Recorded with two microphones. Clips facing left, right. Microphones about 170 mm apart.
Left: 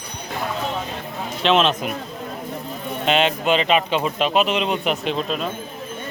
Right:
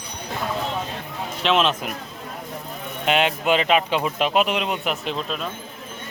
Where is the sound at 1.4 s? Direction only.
5° right (ahead or behind).